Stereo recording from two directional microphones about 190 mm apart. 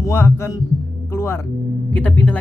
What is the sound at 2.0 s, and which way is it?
Speech, 10° left (ahead or behind).